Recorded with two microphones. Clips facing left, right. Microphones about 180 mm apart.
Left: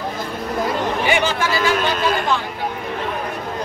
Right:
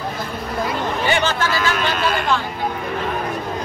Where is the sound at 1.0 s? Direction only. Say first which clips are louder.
Right 1 dB; 10° left (ahead or behind).